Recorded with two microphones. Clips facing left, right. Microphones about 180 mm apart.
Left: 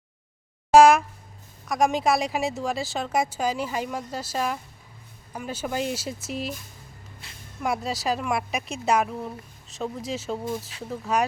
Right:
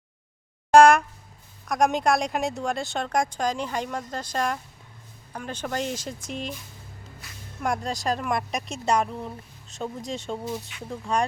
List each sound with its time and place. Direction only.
0.7 s speech: 5° left (ahead or behind)
7.2 s a sound: 30° left (ahead or behind)
7.6 s speech: 5° left (ahead or behind)